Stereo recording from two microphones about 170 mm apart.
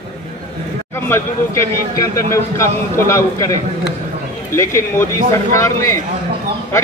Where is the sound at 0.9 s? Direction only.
15° left (ahead or behind).